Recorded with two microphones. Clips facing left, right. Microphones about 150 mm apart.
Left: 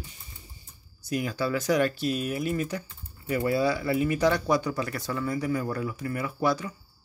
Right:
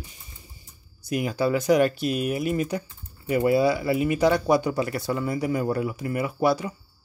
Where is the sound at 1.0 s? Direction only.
15° right (ahead or behind).